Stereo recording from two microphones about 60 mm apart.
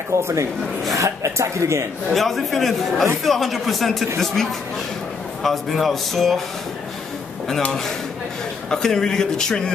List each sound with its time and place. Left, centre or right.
0.1 s speech: right
2.0 s a man's voice: centre
5.4 s a man's voice: centre
8.6 s speech: centre